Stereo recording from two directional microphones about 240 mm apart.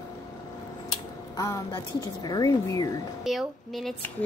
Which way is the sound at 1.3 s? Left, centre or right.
Centre.